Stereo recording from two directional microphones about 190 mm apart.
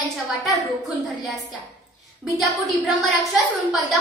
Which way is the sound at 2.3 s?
Centre (ahead or behind).